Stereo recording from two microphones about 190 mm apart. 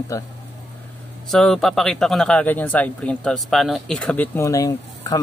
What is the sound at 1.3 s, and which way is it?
Speech, 5° left (ahead or behind).